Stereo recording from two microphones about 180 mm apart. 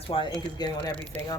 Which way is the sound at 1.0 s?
10° left (ahead or behind).